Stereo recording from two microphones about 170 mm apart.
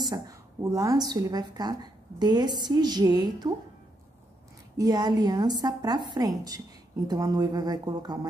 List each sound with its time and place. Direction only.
0.1 s a woman's voice: 20° right (ahead or behind)
4.7 s a woman's voice: 25° right (ahead or behind)